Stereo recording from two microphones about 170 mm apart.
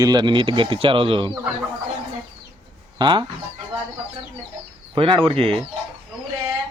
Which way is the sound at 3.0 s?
25° right (ahead or behind).